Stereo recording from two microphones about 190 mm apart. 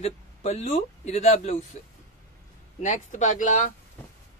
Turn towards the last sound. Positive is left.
turn(degrees=40)  # may be behind; listen again after turning